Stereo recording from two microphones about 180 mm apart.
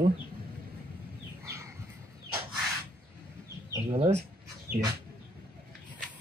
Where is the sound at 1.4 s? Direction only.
15° right (ahead or behind).